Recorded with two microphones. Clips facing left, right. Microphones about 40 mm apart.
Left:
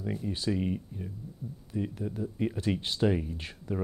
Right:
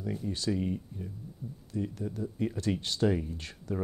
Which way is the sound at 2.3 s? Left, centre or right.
Centre.